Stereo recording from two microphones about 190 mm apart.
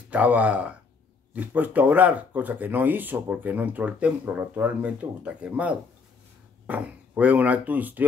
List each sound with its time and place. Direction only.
0.1 s speech: 5° right (ahead or behind)